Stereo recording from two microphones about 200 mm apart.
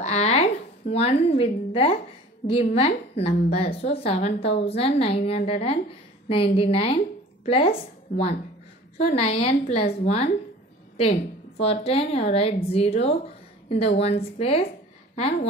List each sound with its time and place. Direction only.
0.0 s a sound: 30° left (ahead or behind)
2.4 s a woman's voice: 30° left (ahead or behind)
8.9 s a woman's voice: 30° left (ahead or behind)